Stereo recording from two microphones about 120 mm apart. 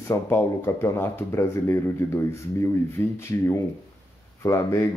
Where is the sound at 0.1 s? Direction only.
20° left (ahead or behind).